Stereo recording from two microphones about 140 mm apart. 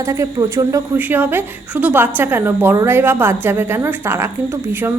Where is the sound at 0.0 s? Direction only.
20° right (ahead or behind).